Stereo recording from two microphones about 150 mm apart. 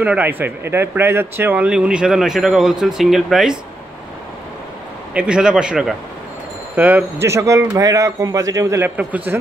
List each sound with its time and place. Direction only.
0.0 s speech: 10° right (ahead or behind)
5.1 s a man's voice: 5° right (ahead or behind)